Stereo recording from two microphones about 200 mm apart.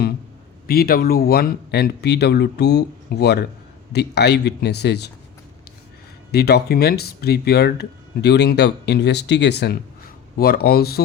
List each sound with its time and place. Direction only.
0.7 s speech: 50° left (ahead or behind)
6.3 s speech: 50° left (ahead or behind)